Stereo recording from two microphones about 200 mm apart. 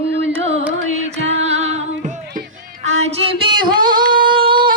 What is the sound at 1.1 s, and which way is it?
Music, 35° right (ahead or behind).